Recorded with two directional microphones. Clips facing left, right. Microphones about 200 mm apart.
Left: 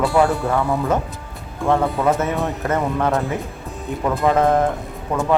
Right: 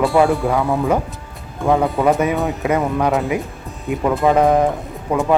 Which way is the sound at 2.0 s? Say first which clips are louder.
Right 3 dB; 15° right (ahead or behind).